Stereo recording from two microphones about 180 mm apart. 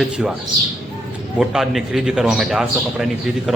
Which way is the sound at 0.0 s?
5° right (ahead or behind).